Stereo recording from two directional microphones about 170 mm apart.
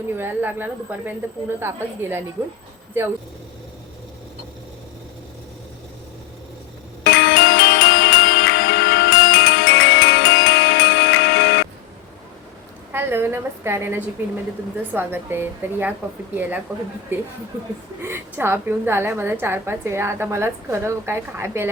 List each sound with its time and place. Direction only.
0.2 s a woman's voice: 10° right (ahead or behind)
7.0 s music: 80° left
12.9 s a woman's voice: 15° right (ahead or behind)
18.0 s a woman's voice: 15° right (ahead or behind)